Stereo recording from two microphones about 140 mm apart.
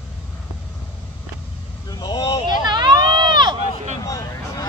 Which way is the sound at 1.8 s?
30° left (ahead or behind).